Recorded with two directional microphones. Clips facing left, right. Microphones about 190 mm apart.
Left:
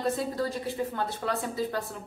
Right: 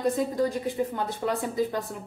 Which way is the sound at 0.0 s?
15° right (ahead or behind).